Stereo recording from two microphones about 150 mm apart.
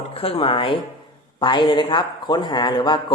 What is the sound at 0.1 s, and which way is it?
A man's voice, 40° left (ahead or behind).